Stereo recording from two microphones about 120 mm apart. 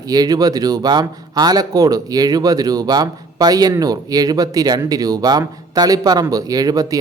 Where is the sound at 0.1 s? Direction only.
30° right (ahead or behind).